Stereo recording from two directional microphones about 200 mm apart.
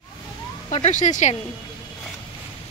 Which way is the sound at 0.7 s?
35° left (ahead or behind).